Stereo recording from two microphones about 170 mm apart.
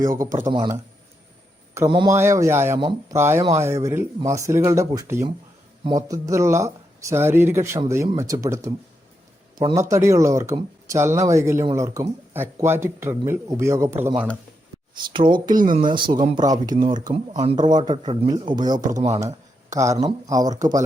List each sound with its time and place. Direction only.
0.0 s a man's voice: 20° right (ahead or behind)
15.0 s speech: 30° right (ahead or behind)
15.4 s speech: 50° right (ahead or behind)
15.8 s speech: 30° right (ahead or behind)
16.7 s speech: 50° right (ahead or behind)
17.7 s speech: 25° right (ahead or behind)
18.0 s speech: 35° right (ahead or behind)
18.9 s speech: 40° right (ahead or behind)
19.7 s speech: 20° right (ahead or behind)